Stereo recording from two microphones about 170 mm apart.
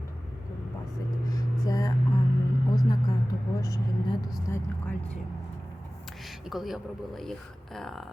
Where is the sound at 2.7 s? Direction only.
20° left (ahead or behind).